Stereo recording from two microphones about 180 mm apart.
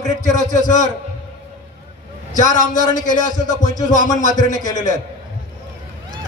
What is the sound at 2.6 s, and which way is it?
Speech, 45° left (ahead or behind).